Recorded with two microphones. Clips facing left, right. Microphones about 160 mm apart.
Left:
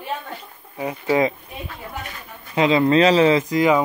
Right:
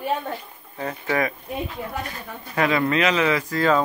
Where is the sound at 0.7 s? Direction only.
15° left (ahead or behind).